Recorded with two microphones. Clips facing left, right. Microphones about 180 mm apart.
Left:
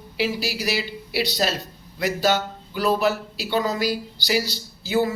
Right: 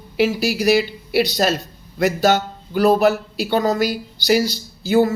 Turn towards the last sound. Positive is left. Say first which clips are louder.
# right 6 dB
turn(degrees=-45)  # may be behind; listen again after turning